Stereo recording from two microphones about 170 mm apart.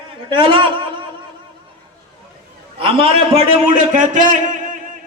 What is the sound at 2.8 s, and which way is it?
A man's voice, 30° right (ahead or behind).